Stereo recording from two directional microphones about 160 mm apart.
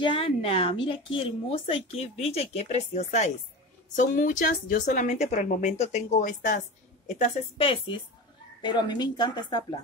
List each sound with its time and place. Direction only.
0.0 s a woman's voice: 35° left (ahead or behind); by 6.6 s 55° left (ahead or behind)
7.2 s a woman's voice: 35° left (ahead or behind)